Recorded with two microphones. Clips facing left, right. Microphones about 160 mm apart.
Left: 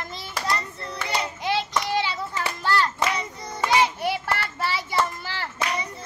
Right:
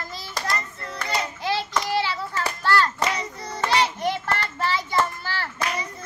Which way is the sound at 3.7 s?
10° left (ahead or behind).